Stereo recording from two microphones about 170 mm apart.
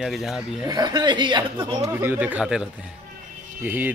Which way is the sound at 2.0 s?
10° right (ahead or behind).